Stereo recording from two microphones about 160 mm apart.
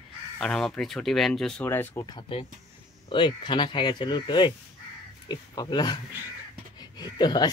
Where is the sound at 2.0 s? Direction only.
30° left (ahead or behind).